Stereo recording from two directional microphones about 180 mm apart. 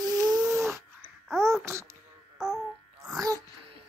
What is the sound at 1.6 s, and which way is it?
Speech, 15° right (ahead or behind).